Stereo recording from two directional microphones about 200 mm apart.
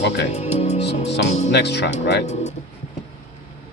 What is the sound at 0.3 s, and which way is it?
Music, 35° left (ahead or behind).